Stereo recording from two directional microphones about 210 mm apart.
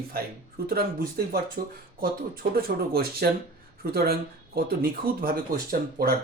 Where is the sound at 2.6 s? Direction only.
45° right (ahead or behind).